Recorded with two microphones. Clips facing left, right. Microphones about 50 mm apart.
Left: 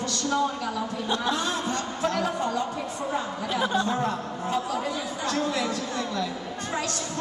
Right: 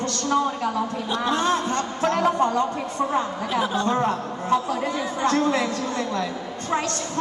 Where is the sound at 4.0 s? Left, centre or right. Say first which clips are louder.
Right 4 dB; right.